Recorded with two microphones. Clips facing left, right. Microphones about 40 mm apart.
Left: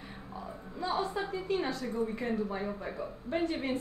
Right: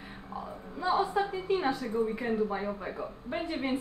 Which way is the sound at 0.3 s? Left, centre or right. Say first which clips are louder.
Right 4 dB; centre.